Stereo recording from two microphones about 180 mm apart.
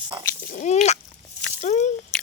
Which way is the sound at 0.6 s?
40° left (ahead or behind).